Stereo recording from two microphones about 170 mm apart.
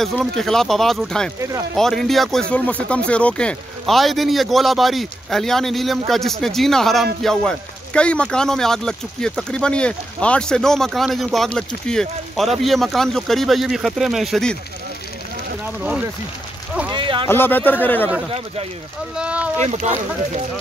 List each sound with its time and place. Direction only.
0.0 s speech: centre (ahead or behind)
15.6 s speech: 5° right (ahead or behind)
16.9 s speech: 30° right (ahead or behind)
17.3 s speech: 10° left (ahead or behind)
19.1 s speech: 5° right (ahead or behind)
19.6 s speech: 40° right (ahead or behind)